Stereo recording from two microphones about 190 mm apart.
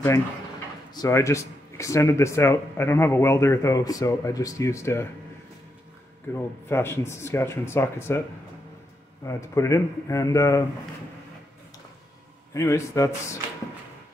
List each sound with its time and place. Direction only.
0.9 s speech: 15° left (ahead or behind)
6.3 s speech: 10° left (ahead or behind)
9.2 s speech: 15° left (ahead or behind)
12.5 s speech: 15° left (ahead or behind)